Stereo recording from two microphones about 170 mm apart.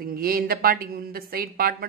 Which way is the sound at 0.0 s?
60° right (ahead or behind).